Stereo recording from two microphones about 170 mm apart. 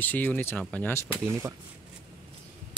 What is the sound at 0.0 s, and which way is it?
Speech, 10° left (ahead or behind).